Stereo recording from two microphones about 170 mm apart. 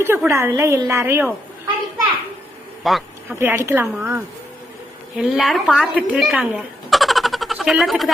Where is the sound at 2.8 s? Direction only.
Centre (ahead or behind).